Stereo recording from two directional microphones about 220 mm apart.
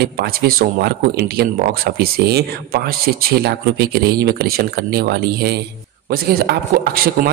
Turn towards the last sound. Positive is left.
turn(degrees=-45)  # may be behind; listen again after turning